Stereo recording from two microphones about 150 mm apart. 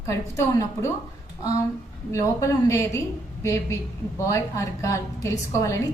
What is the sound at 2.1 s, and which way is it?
Speech, 20° left (ahead or behind).